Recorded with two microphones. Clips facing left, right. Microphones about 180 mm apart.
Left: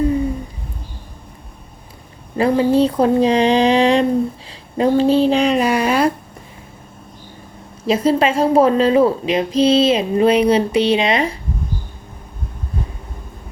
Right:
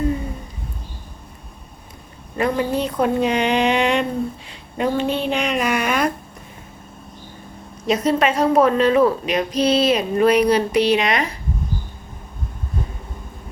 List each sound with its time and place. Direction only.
2.4 s speech: 30° left (ahead or behind)
7.9 s a woman's voice: 30° left (ahead or behind)